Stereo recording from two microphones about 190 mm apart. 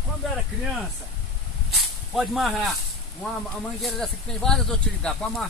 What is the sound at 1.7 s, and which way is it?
Speech, centre (ahead or behind).